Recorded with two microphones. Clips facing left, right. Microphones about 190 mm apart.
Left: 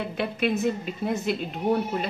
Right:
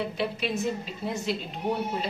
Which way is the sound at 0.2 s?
55° left (ahead or behind).